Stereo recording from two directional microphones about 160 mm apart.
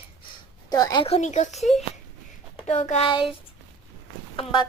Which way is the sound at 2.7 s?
40° left (ahead or behind).